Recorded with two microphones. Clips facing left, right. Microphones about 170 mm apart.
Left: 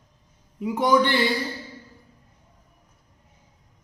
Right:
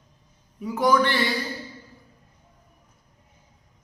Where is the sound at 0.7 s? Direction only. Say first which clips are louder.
Left 1 dB; 25° left (ahead or behind).